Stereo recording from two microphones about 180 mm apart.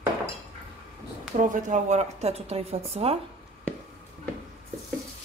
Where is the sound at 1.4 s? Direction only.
45° right (ahead or behind).